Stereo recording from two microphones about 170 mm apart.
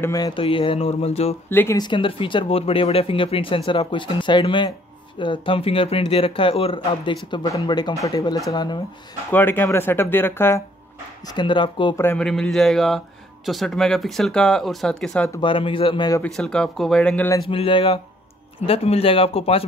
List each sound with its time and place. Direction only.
0.0 s speech: 20° left (ahead or behind); by 1.3 s 35° left (ahead or behind)
1.5 s speech: 10° left (ahead or behind)
1.8 s speech: 30° left (ahead or behind)
9.3 s speech: 10° left (ahead or behind)
11.2 s speech: 30° left (ahead or behind)
12.0 s speech: 10° left (ahead or behind)
15.4 s speech: 30° left (ahead or behind)
16.2 s speech: 5° left (ahead or behind)
17.5 s speech: 30° left (ahead or behind)